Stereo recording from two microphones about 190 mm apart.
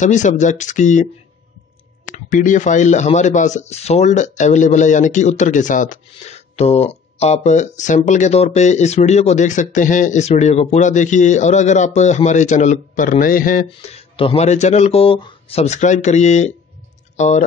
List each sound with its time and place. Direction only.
0.0 s speech: 40° left (ahead or behind)
2.1 s speech: 45° left (ahead or behind)
13.7 s speech: 30° left (ahead or behind)